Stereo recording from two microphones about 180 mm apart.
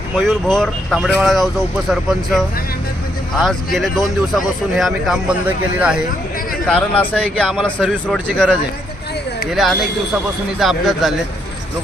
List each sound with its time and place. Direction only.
0.2 s speech: 5° left (ahead or behind)
6.7 s speech: 5° left (ahead or behind)
9.5 s speech: centre (ahead or behind)